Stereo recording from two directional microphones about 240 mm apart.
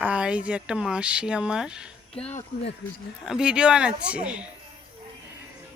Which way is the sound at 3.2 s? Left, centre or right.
Centre.